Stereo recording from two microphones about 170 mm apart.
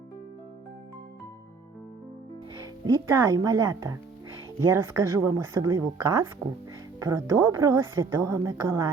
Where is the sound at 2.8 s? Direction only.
15° right (ahead or behind).